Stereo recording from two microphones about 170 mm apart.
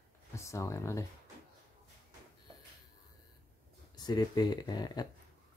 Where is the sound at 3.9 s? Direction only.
25° left (ahead or behind).